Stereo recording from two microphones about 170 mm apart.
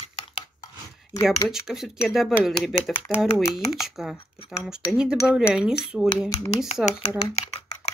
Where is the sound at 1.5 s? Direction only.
Centre (ahead or behind).